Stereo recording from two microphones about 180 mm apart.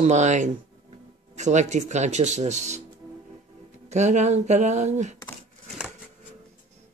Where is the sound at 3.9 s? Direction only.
40° right (ahead or behind).